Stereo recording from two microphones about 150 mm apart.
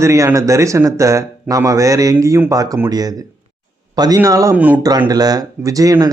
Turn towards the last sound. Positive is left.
turn(degrees=-25)  # may be behind; listen again after turning